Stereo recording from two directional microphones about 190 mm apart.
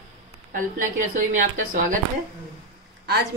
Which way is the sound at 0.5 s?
45° right (ahead or behind).